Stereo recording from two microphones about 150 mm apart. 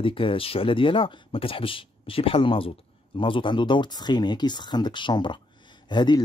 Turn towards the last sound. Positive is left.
turn(degrees=30)  # may be behind; listen again after turning